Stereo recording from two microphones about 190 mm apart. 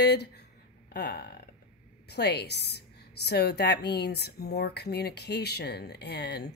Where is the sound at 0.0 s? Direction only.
60° left (ahead or behind).